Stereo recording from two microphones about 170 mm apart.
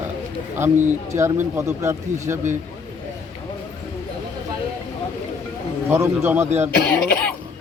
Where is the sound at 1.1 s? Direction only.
15° right (ahead or behind).